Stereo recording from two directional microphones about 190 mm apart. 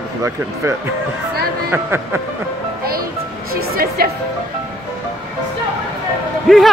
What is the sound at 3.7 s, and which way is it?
Music, 55° right (ahead or behind).